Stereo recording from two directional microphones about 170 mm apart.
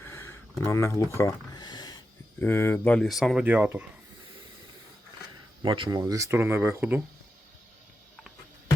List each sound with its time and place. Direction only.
0.0 s a sound: 15° left (ahead or behind)
0.6 s speech: 15° left (ahead or behind)
2.4 s speech: 15° left (ahead or behind); by 3.8 s 10° right (ahead or behind)
5.6 s speech: 25° right (ahead or behind)